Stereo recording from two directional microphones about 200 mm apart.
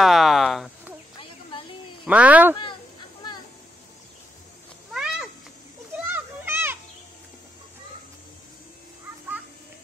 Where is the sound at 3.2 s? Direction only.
20° left (ahead or behind).